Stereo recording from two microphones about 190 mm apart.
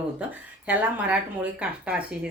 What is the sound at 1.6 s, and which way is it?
Speech, 5° right (ahead or behind).